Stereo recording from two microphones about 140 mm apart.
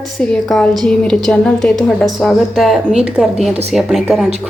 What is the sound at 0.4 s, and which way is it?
A woman's voice, centre (ahead or behind).